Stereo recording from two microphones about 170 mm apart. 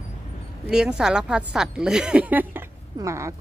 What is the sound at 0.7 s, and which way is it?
Speech, 5° right (ahead or behind).